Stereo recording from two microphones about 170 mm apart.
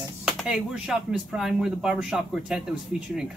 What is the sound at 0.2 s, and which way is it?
Speech, 5° right (ahead or behind).